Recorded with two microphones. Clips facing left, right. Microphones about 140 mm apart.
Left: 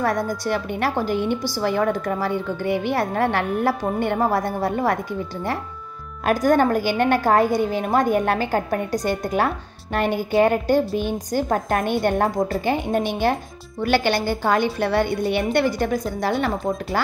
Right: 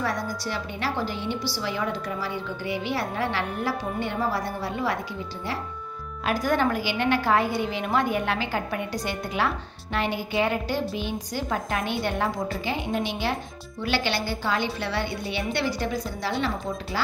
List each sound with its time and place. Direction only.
0.0 s a woman's voice: 50° left (ahead or behind)
6.2 s a woman's voice: 45° left (ahead or behind)